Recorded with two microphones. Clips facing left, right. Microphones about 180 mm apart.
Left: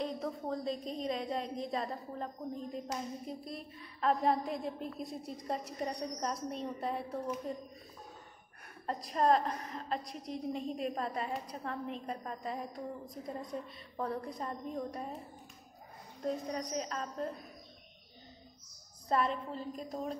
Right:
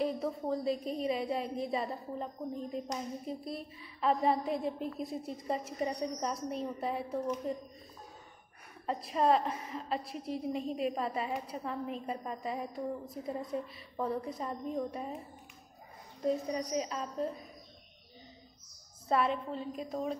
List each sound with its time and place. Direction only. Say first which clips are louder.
0.0 s a woman's voice: right 4 dB; 5° right (ahead or behind)
8.8 s a woman's voice: right 1 dB; centre (ahead or behind)
16.2 s a woman's voice: right 4 dB; 5° right (ahead or behind)
19.0 s a woman's voice: right 2 dB; 5° right (ahead or behind)